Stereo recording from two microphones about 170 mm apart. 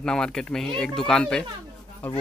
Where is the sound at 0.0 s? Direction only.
5° left (ahead or behind).